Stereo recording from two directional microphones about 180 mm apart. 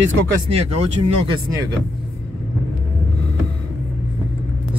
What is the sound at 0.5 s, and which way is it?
Speech, 35° right (ahead or behind).